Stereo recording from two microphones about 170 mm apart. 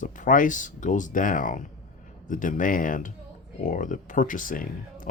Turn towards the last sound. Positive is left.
turn(degrees=55)  # may be behind; listen again after turning